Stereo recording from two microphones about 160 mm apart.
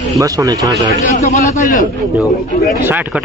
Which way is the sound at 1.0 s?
45° left (ahead or behind).